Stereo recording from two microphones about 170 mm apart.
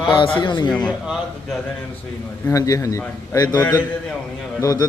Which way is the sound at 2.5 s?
20° left (ahead or behind).